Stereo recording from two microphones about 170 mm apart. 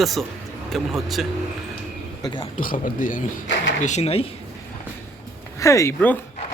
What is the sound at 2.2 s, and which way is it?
Speech, 25° left (ahead or behind).